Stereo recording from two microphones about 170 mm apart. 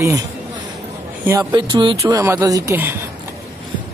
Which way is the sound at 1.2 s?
20° right (ahead or behind).